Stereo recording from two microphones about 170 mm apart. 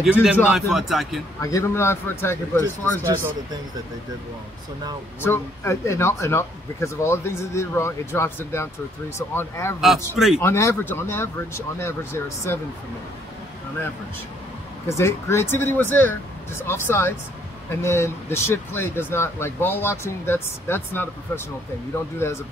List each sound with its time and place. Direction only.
0.0 s speech: centre (ahead or behind)
1.4 s speech: 15° left (ahead or behind)
5.2 s speech: 15° left (ahead or behind)
10.1 s speech: 5° right (ahead or behind)
10.4 s speech: 15° left (ahead or behind)
14.9 s speech: 15° left (ahead or behind)